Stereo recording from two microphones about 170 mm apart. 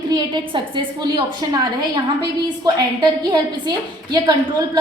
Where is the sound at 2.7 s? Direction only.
25° right (ahead or behind).